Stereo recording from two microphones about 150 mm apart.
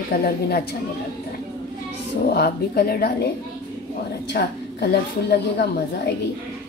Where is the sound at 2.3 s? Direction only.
90° left.